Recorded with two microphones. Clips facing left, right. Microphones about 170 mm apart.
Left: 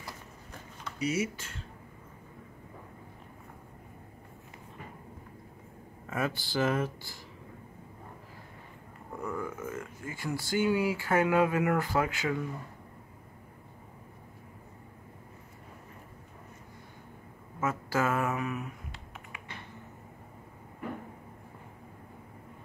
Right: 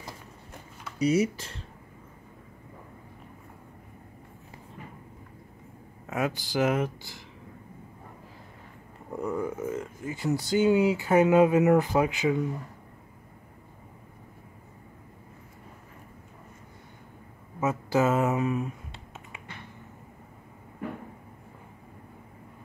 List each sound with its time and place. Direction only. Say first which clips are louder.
0.9 s speech: right 7 dB; 35° right (ahead or behind)
6.0 s speech: right 3 dB; 20° right (ahead or behind)
9.2 s speech: right 6 dB; 20° right (ahead or behind)
17.6 s computer keyboard: right 5 dB; 20° right (ahead or behind)